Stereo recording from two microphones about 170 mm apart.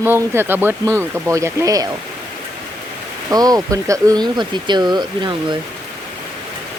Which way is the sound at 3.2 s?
20° right (ahead or behind).